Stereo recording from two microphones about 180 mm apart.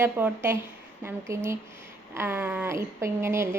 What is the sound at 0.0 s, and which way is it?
A woman's voice, 10° right (ahead or behind).